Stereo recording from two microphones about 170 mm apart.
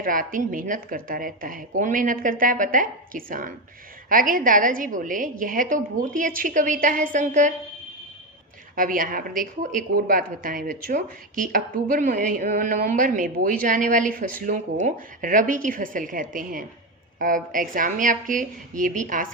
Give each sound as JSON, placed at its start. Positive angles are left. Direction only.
{"t": 0.0, "sound": "speech", "side_deg": -55}
{"t": 8.7, "sound": "speech", "side_deg": -55}